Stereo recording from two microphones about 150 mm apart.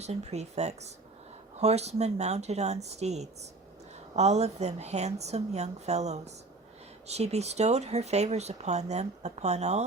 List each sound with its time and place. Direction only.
0.0 s speech: 45° right (ahead or behind)